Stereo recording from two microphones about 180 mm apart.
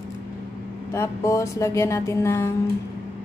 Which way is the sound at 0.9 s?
15° left (ahead or behind).